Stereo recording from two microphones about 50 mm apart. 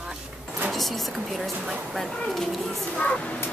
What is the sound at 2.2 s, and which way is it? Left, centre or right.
Speech, centre.